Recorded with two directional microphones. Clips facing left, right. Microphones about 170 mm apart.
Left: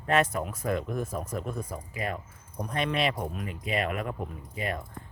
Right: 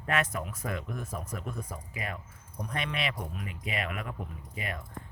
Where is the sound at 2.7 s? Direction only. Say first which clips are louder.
Left 6 dB; 35° left (ahead or behind).